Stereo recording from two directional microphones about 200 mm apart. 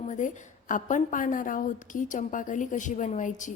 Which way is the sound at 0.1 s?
40° left (ahead or behind).